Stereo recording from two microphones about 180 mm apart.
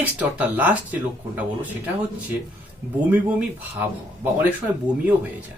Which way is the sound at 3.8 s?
10° right (ahead or behind).